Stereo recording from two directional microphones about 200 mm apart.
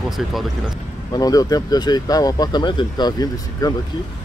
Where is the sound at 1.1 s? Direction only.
20° left (ahead or behind).